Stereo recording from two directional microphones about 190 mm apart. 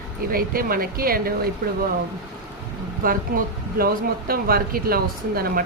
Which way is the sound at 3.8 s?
50° right (ahead or behind).